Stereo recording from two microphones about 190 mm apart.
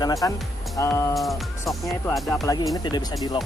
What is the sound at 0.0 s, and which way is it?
Speech, 20° left (ahead or behind).